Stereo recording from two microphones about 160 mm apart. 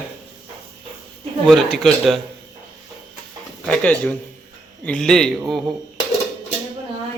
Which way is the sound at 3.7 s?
10° left (ahead or behind).